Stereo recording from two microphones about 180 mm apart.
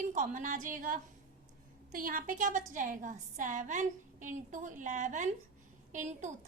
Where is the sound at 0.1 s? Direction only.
45° right (ahead or behind).